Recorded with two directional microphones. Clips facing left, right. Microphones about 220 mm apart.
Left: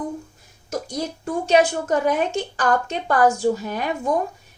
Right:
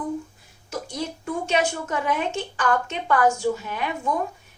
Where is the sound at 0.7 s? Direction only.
40° left (ahead or behind).